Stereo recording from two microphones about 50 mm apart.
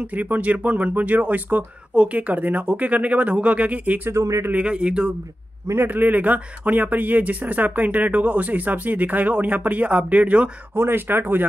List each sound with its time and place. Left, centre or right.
0.0 s speech: right
4.1 s speech: right
4.5 s speech: right
5.9 s speech: right
10.7 s speech: right